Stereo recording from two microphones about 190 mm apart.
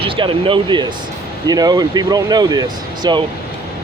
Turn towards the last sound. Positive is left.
turn(degrees=-25)  # may be behind; listen again after turning